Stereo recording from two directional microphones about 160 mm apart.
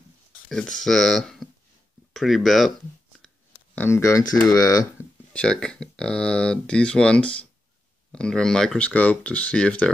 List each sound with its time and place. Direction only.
0.5 s speech: 5° left (ahead or behind)
3.7 s speech: 15° left (ahead or behind)
5.3 s speech: 5° left (ahead or behind)